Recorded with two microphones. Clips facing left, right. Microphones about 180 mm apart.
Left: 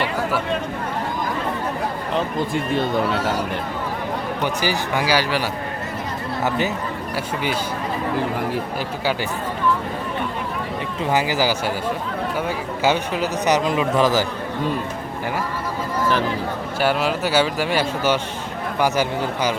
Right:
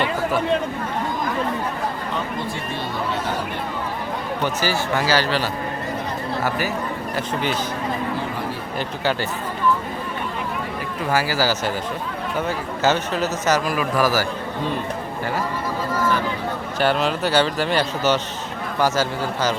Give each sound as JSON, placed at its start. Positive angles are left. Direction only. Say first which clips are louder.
{"t": 4.4, "sound": "a man's voice", "louder": "right 1 dB", "side_deg": 15}
{"t": 11.0, "sound": "a man's voice", "louder": "left 1 dB", "side_deg": 20}
{"t": 16.8, "sound": "a man's voice", "louder": "even", "side_deg": 10}